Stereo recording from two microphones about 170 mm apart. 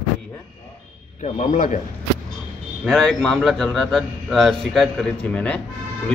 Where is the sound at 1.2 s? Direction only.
45° left (ahead or behind).